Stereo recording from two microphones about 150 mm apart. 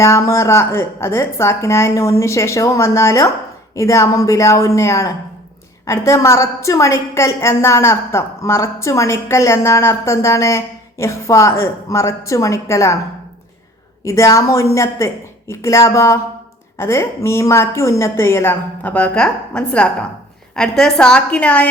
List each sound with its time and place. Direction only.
0.0 s a woman's voice: 20° left (ahead or behind)
14.0 s a woman's voice: 20° left (ahead or behind)